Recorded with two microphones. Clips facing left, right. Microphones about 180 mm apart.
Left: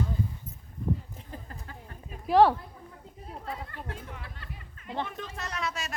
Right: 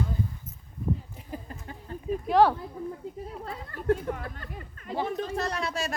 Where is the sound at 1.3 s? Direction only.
20° right (ahead or behind).